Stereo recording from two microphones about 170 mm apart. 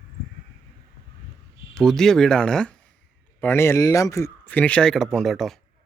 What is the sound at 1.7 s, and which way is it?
Speech, 5° left (ahead or behind).